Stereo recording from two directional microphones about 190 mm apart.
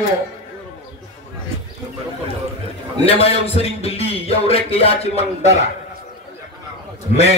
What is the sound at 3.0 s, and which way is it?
A man's voice, 30° left (ahead or behind).